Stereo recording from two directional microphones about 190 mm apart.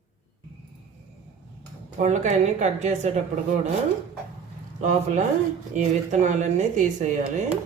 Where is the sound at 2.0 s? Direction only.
40° right (ahead or behind).